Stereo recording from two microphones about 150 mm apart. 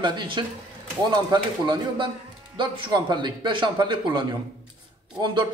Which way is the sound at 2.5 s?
30° right (ahead or behind).